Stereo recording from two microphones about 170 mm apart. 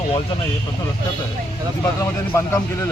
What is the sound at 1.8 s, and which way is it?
Speech, 20° left (ahead or behind).